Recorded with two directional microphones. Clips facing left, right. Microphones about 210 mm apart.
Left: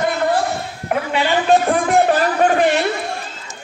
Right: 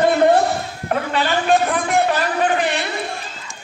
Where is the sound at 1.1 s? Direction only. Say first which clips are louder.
Left 3 dB; 15° left (ahead or behind).